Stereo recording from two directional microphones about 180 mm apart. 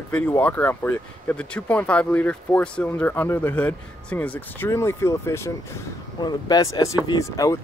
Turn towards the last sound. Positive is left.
turn(degrees=20)  # may be behind; listen again after turning